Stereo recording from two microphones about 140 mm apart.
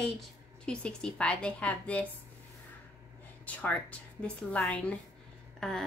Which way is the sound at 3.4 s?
10° left (ahead or behind).